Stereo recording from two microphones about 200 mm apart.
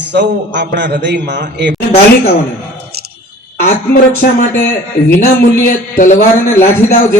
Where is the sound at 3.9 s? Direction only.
45° left (ahead or behind).